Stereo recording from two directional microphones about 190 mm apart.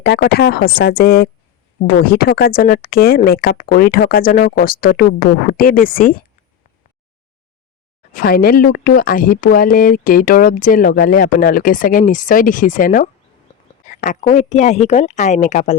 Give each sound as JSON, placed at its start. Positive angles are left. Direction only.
{"t": 0.0, "sound": "speech", "side_deg": 60}
{"t": 8.1, "sound": "speech", "side_deg": 50}